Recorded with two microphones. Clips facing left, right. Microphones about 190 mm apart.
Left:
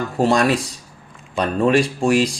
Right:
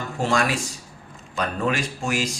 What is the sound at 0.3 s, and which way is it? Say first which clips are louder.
Speech: left 5 dB; 35° left (ahead or behind).